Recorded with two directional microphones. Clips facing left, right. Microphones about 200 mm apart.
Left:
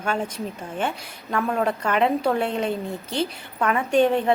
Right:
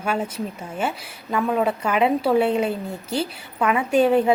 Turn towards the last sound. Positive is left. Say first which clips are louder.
# right 2 dB
turn(degrees=-5)  # may be behind; listen again after turning